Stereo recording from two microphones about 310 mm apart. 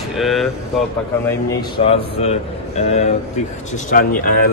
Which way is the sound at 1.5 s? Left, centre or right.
Centre.